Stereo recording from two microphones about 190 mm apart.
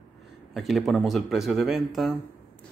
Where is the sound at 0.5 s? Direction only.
Centre (ahead or behind).